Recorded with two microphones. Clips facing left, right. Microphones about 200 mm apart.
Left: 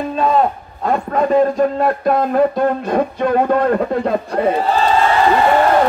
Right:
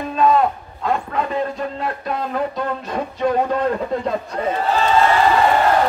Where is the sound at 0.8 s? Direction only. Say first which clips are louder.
Left 5 dB; 45° left (ahead or behind).